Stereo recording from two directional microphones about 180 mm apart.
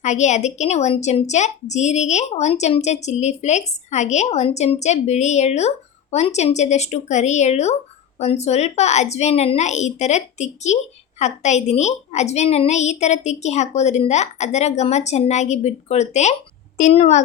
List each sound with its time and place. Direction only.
0.0 s a woman's voice: 40° left (ahead or behind)